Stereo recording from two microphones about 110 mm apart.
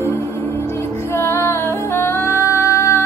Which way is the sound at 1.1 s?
20° left (ahead or behind).